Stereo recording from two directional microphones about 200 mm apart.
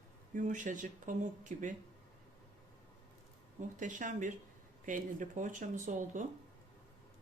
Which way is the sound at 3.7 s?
40° right (ahead or behind).